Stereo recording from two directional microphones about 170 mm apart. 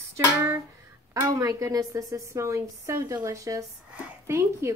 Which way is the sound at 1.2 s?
20° right (ahead or behind).